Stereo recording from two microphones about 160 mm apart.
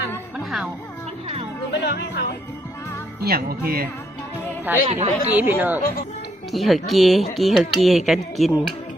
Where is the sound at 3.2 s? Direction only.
70° right (ahead or behind).